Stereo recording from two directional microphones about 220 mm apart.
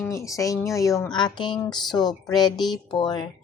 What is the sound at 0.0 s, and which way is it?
Speech, 15° left (ahead or behind).